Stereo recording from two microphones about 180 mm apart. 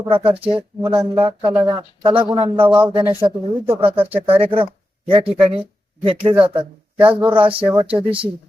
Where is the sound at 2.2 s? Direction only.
25° right (ahead or behind).